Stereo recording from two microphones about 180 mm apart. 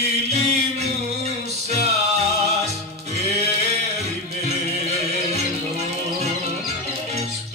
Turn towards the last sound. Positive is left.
turn(degrees=-35)  # may be behind; listen again after turning